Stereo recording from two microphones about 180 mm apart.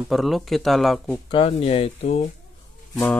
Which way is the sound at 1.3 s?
30° left (ahead or behind).